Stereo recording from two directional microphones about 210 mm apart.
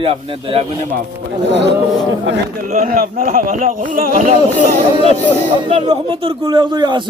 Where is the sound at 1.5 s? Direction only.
55° right (ahead or behind).